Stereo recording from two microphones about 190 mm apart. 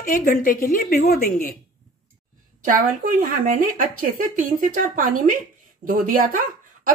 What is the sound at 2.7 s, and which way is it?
Speech, 45° right (ahead or behind).